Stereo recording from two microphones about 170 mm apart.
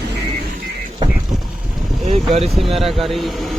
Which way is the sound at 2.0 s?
35° right (ahead or behind).